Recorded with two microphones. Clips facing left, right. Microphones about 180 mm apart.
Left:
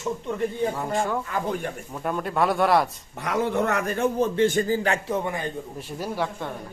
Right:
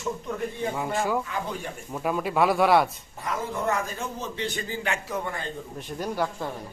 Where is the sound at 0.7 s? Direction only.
5° right (ahead or behind).